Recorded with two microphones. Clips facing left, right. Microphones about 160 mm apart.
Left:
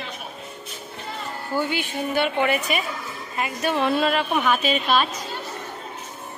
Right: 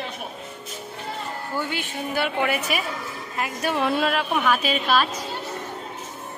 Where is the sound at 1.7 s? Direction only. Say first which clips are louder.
Left 3 dB; centre (ahead or behind).